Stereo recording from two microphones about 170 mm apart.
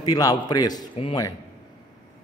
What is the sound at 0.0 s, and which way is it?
Speech, 20° left (ahead or behind).